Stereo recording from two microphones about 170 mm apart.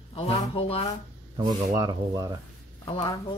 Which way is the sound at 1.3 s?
20° right (ahead or behind).